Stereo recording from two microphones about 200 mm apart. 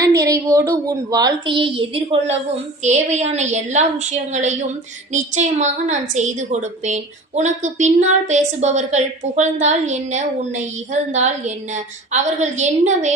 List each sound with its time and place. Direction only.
0.2 s a woman's voice: 15° right (ahead or behind); by 13.1 s 35° right (ahead or behind)